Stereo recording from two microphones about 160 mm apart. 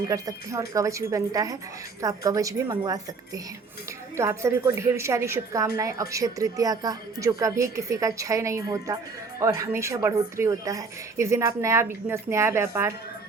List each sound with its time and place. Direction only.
0.1 s a woman's voice: 20° right (ahead or behind)